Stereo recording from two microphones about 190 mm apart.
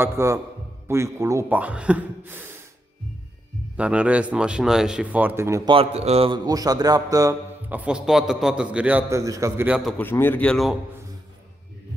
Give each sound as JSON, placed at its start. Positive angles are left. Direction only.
{"t": 0.0, "sound": "speech", "side_deg": -15}
{"t": 3.7, "sound": "speech", "side_deg": -5}
{"t": 5.7, "sound": "a man's voice", "side_deg": -30}
{"t": 7.8, "sound": "a man's voice", "side_deg": -5}
{"t": 9.8, "sound": "a man's voice", "side_deg": 0}
{"t": 10.0, "sound": "a man's voice", "side_deg": 10}